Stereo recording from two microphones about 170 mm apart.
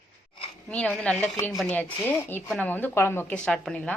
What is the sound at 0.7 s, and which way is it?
Speech, 5° left (ahead or behind).